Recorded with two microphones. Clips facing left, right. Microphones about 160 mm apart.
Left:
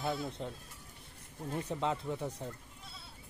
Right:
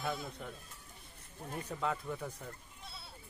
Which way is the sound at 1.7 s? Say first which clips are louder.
Left 1 dB; 25° left (ahead or behind).